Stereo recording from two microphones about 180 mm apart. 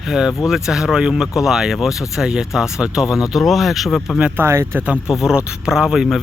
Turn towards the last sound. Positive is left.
turn(degrees=0)  # may be behind; listen again after turning